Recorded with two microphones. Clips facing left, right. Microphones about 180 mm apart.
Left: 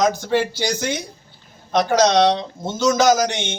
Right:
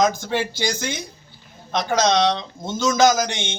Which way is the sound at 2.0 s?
60° left (ahead or behind).